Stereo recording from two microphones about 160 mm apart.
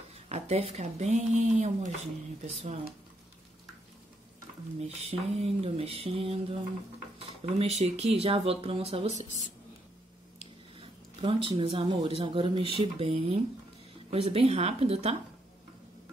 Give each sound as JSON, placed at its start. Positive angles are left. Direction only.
{"t": 0.3, "sound": "speech", "side_deg": -40}
{"t": 4.7, "sound": "speech", "side_deg": -40}
{"t": 10.8, "sound": "speech", "side_deg": -35}